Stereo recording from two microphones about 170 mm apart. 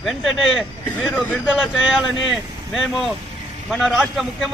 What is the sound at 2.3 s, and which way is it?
A man's voice, centre (ahead or behind).